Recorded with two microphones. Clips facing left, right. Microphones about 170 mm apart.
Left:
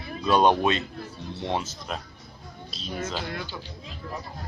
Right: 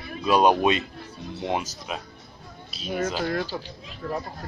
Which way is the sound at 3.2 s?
40° right (ahead or behind).